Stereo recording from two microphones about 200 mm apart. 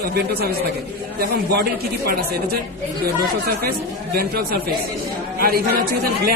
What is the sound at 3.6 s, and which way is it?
Speech, 50° right (ahead or behind).